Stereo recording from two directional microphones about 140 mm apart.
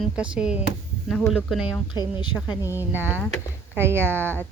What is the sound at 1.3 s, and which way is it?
Speech, 5° right (ahead or behind).